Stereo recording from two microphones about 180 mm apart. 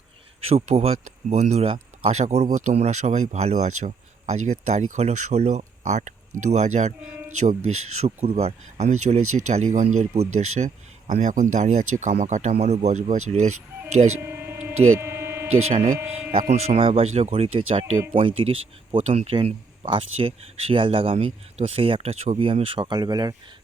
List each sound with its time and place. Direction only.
0.4 s speech: 35° right (ahead or behind)
8.0 s speech: 35° right (ahead or behind)
14.2 s a sound: 15° right (ahead or behind)
15.6 s speech: 35° right (ahead or behind)